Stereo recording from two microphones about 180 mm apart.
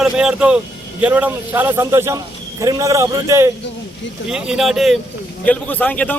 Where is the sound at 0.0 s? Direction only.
5° right (ahead or behind).